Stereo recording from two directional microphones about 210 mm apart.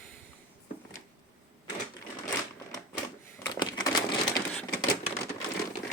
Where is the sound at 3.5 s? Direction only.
20° left (ahead or behind).